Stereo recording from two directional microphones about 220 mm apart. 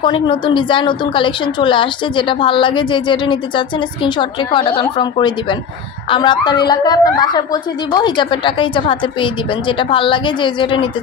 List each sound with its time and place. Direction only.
0.0 s a woman's voice: 20° left (ahead or behind)